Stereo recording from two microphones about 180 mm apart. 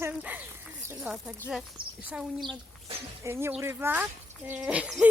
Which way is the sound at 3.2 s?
15° right (ahead or behind).